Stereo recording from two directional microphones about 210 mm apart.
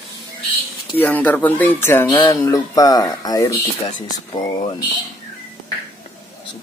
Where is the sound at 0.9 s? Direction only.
5° left (ahead or behind).